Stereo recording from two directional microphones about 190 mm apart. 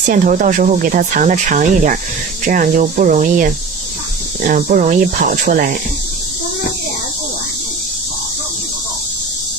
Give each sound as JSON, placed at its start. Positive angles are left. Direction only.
{"t": 0.0, "sound": "speech", "side_deg": -45}